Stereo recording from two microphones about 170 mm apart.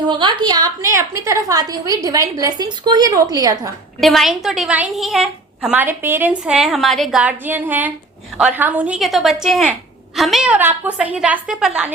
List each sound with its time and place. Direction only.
0.1 s a woman's voice: 25° right (ahead or behind)
4.0 s a woman's voice: centre (ahead or behind)